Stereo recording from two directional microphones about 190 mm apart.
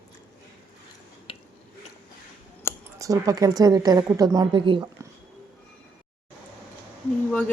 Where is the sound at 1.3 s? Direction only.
25° left (ahead or behind).